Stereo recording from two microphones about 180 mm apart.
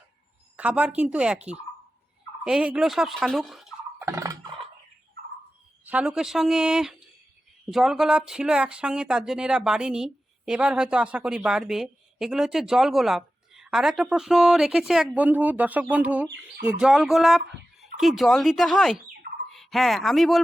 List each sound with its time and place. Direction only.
0.5 s speech: 5° right (ahead or behind)
4.0 s turkey: 15° right (ahead or behind)
5.8 s speech: 5° right (ahead or behind)